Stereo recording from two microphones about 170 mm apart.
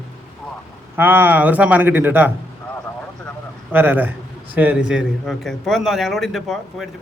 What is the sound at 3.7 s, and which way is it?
A man's voice, 10° right (ahead or behind).